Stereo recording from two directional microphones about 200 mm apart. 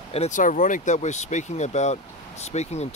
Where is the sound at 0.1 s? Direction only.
35° left (ahead or behind).